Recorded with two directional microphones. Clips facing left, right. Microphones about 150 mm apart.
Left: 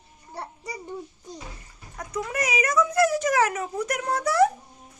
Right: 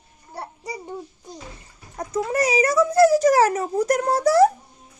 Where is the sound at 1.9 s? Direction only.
35° right (ahead or behind).